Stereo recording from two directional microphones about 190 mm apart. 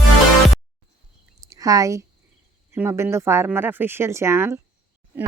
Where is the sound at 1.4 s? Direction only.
20° right (ahead or behind).